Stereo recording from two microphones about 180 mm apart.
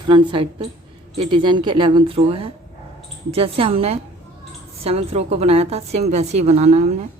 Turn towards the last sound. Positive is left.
turn(degrees=-35)  # may be behind; listen again after turning